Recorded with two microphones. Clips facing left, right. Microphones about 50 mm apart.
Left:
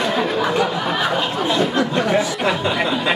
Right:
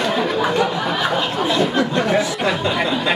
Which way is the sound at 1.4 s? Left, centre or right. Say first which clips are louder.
Right 1 dB; centre.